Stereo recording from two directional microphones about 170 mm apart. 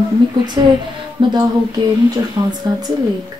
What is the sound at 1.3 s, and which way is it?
Speech, 25° right (ahead or behind).